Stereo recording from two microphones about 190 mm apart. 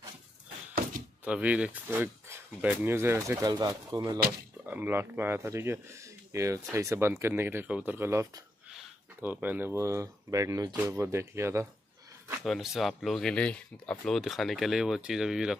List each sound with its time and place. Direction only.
1.2 s speech: 5° right (ahead or behind)
8.6 s speech: 5° right (ahead or behind)
12.3 s speech: centre (ahead or behind)